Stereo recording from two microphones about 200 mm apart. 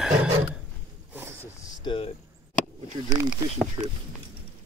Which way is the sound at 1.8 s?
25° left (ahead or behind).